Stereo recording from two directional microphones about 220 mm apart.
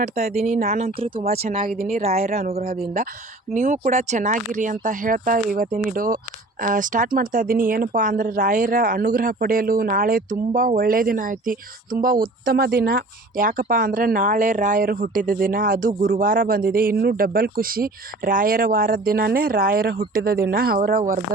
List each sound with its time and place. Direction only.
0.0 s speech: 30° right (ahead or behind)
2.0 s a woman's voice: 30° right (ahead or behind)